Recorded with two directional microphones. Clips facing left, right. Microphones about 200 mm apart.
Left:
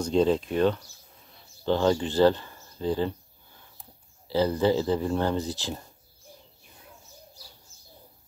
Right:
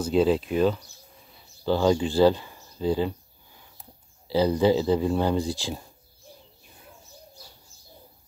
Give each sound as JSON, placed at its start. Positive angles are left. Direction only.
{"t": 0.0, "sound": "speech", "side_deg": -5}
{"t": 2.0, "sound": "a sound", "side_deg": -10}
{"t": 4.3, "sound": "speech", "side_deg": -15}